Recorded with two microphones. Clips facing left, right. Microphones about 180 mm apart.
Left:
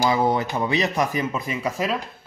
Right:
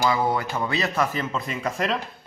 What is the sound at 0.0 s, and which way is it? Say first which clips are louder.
A man's voice: left 2 dB; 20° left (ahead or behind).